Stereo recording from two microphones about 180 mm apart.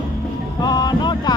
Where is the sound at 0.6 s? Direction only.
20° left (ahead or behind).